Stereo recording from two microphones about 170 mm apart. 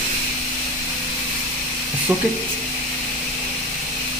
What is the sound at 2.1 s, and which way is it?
Speech, 10° right (ahead or behind).